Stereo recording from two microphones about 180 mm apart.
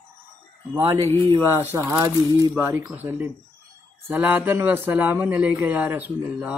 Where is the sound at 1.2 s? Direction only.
20° right (ahead or behind).